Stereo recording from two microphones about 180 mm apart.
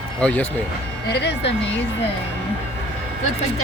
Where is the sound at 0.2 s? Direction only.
10° left (ahead or behind).